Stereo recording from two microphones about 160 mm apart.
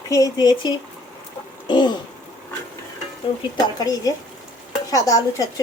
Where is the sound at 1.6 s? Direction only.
30° left (ahead or behind).